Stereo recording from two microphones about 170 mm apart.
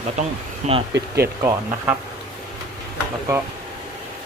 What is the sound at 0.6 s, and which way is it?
Speech, 40° right (ahead or behind).